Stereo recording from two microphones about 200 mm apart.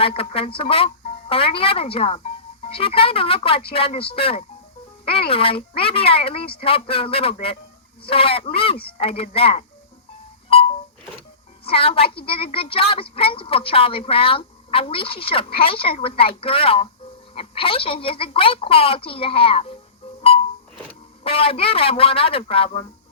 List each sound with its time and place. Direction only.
0.0 s a woman's voice: 30° left (ahead or behind)
5.3 s a woman's voice: 25° left (ahead or behind)
10.5 s a sound: 30° left (ahead or behind)
11.6 s a woman's voice: 30° left (ahead or behind)
20.2 s music: 30° left (ahead or behind)
21.2 s a woman's voice: 30° left (ahead or behind)